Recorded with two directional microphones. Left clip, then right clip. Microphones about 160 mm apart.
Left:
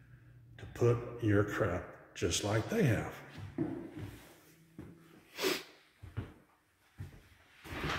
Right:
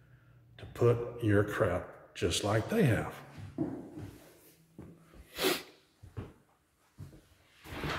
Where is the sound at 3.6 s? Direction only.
5° right (ahead or behind).